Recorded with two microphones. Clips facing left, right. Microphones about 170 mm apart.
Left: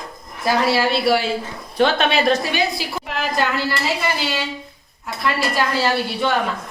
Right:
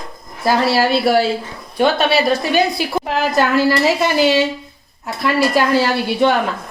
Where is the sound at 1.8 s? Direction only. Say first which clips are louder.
Right 2 dB; 10° right (ahead or behind).